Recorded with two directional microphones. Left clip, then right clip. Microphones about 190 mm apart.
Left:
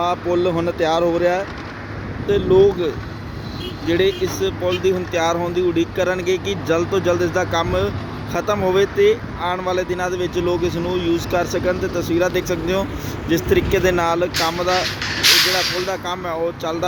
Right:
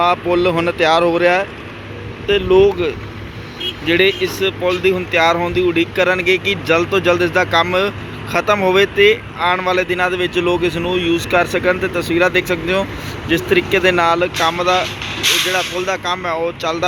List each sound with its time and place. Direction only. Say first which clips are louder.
0.0 s speech: right 5 dB; centre (ahead or behind)
2.3 s speech: right 2 dB; 10° left (ahead or behind)
15.9 s speech: right 5 dB; 10° left (ahead or behind)